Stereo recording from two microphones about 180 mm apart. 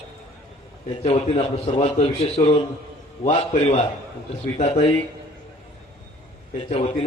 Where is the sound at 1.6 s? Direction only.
35° left (ahead or behind).